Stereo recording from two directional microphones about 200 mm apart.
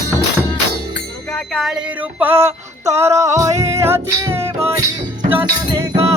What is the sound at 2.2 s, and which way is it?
Music, 10° right (ahead or behind).